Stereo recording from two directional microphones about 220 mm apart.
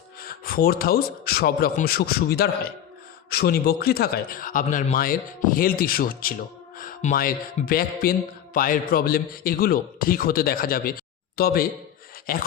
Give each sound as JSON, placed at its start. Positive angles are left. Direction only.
{"t": 0.2, "sound": "a man's voice", "side_deg": 40}